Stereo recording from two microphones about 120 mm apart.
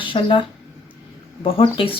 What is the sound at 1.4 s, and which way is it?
Speech, 50° left (ahead or behind).